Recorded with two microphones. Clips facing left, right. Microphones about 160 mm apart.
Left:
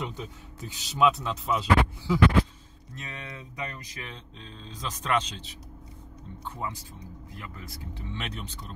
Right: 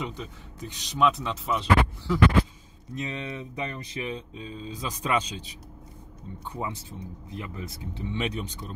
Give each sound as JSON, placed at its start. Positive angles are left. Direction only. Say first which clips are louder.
{"t": 0.0, "sound": "speech", "louder": "right 1 dB", "side_deg": 5}
{"t": 2.9, "sound": "speech", "louder": "right 8 dB", "side_deg": -20}
{"t": 4.1, "sound": "speech", "louder": "right 9 dB", "side_deg": -10}